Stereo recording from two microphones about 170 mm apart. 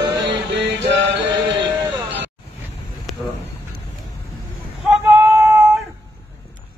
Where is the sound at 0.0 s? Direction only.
25° right (ahead or behind).